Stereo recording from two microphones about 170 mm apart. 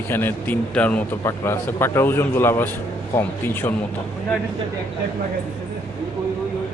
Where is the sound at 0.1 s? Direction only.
10° left (ahead or behind).